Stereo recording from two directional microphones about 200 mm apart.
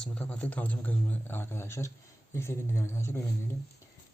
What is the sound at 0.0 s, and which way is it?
Speech, 5° left (ahead or behind).